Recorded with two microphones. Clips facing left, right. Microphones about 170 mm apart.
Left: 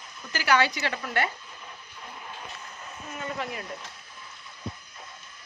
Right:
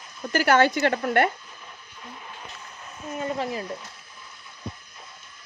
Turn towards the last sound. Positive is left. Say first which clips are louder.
# right 6 dB
turn(degrees=-35)  # may be behind; listen again after turning